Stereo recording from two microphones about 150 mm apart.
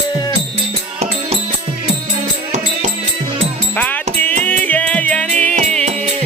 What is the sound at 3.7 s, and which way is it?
Music, 10° left (ahead or behind).